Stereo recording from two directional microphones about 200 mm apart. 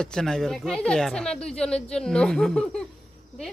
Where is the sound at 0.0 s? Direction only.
5° left (ahead or behind).